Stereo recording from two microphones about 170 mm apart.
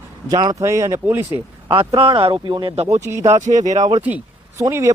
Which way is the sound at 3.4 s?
45° right (ahead or behind).